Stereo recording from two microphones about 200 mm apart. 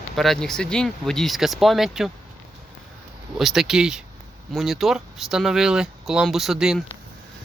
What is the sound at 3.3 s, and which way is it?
Speech, centre (ahead or behind).